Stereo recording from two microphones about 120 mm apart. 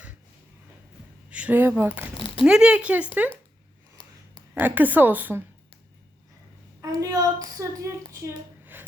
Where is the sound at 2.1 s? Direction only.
45° left (ahead or behind).